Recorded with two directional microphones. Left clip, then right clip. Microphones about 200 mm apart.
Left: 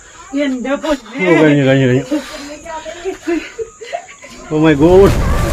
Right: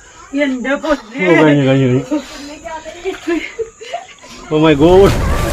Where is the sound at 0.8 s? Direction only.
15° left (ahead or behind).